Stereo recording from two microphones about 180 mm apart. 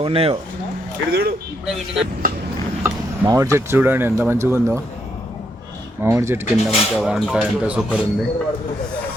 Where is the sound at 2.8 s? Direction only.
15° right (ahead or behind).